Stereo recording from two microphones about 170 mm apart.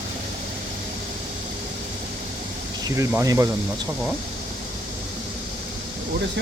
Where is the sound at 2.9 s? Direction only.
20° right (ahead or behind).